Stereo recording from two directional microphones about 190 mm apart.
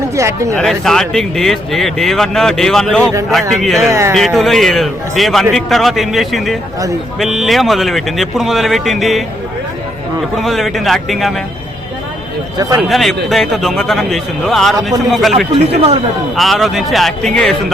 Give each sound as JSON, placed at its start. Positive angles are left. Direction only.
{"t": 0.2, "sound": "speech", "side_deg": -15}
{"t": 0.5, "sound": "speech", "side_deg": 0}
{"t": 3.8, "sound": "speech", "side_deg": -15}
{"t": 4.4, "sound": "speech", "side_deg": 0}
{"t": 10.3, "sound": "speech", "side_deg": 0}
{"t": 12.9, "sound": "speech", "side_deg": 0}
{"t": 15.5, "sound": "speech", "side_deg": -30}
{"t": 16.3, "sound": "speech", "side_deg": 0}